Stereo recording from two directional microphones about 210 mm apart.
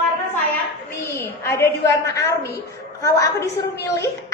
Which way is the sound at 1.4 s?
10° left (ahead or behind).